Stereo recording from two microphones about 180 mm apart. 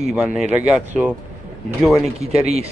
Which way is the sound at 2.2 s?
35° right (ahead or behind).